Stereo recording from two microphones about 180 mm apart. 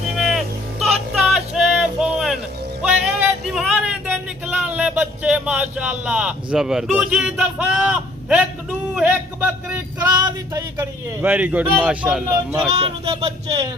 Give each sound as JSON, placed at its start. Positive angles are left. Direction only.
{"t": 0.2, "sound": "vehicle", "side_deg": 0}
{"t": 0.9, "sound": "a sound", "side_deg": -5}
{"t": 2.8, "sound": "music", "side_deg": -5}
{"t": 9.0, "sound": "speech", "side_deg": -10}
{"t": 10.1, "sound": "music", "side_deg": -25}
{"t": 10.8, "sound": "speech", "side_deg": -10}